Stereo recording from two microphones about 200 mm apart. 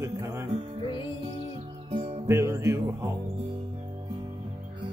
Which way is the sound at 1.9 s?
25° right (ahead or behind).